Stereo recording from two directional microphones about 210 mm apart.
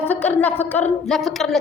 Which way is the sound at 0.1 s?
10° left (ahead or behind).